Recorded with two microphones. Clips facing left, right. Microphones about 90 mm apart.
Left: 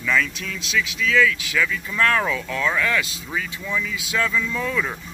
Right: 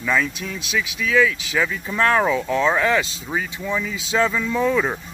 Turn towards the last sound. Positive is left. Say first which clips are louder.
# right 5 dB
turn(degrees=-30)  # may be behind; listen again after turning